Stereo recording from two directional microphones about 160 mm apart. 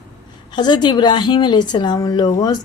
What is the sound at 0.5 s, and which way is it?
A woman's voice, 30° left (ahead or behind).